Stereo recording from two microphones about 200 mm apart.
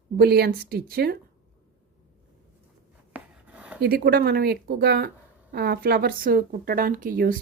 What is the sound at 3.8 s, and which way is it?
Speech, 50° right (ahead or behind).